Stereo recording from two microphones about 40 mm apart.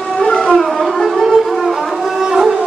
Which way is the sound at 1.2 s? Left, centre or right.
Centre.